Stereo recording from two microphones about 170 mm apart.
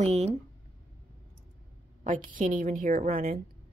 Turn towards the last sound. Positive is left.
turn(degrees=-55)  # may be behind; listen again after turning